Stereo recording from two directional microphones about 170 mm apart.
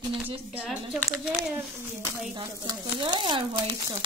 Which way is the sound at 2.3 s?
30° right (ahead or behind).